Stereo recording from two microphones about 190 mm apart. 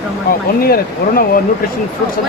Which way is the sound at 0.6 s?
50° left (ahead or behind).